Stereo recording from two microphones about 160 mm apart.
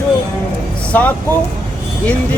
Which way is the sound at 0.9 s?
10° left (ahead or behind).